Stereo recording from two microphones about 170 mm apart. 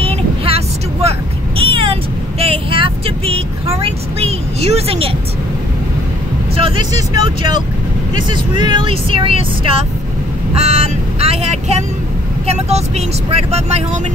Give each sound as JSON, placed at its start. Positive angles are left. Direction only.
{"t": 0.0, "sound": "vehicle", "side_deg": -35}
{"t": 6.5, "sound": "speech", "side_deg": -25}
{"t": 8.2, "sound": "speech", "side_deg": -25}